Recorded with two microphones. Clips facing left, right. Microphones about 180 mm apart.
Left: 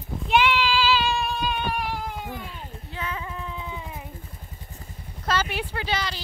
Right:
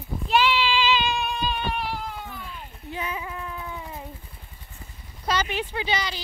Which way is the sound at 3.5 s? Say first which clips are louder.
Even; 20° left (ahead or behind).